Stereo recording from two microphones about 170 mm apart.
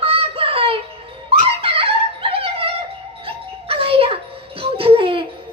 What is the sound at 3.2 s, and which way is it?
Music, 35° right (ahead or behind).